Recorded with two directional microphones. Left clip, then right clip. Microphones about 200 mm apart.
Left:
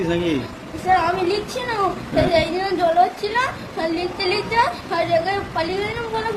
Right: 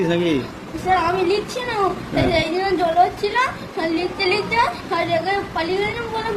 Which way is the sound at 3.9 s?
20° left (ahead or behind).